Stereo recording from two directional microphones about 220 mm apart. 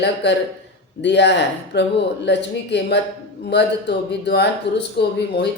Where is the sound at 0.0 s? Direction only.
50° left (ahead or behind).